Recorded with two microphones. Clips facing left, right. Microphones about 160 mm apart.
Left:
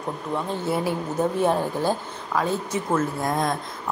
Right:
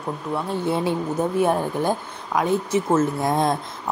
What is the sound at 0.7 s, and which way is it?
Speech, 25° right (ahead or behind).